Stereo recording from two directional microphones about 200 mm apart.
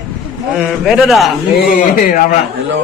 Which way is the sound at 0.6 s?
Centre (ahead or behind).